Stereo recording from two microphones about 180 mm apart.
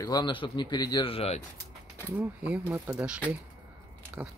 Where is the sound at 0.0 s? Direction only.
25° left (ahead or behind).